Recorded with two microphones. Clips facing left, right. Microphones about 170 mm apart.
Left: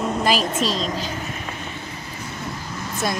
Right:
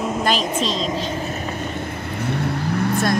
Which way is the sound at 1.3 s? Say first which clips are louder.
Right 6 dB; 55° right (ahead or behind).